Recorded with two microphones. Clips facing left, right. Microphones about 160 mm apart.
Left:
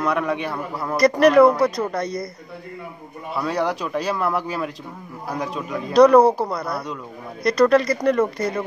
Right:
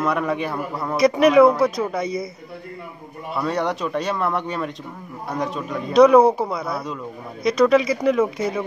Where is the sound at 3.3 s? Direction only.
Centre (ahead or behind).